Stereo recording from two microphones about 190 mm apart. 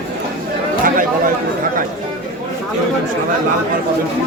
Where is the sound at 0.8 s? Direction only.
45° right (ahead or behind).